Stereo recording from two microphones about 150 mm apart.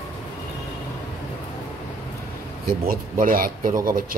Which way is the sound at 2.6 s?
70° right (ahead or behind).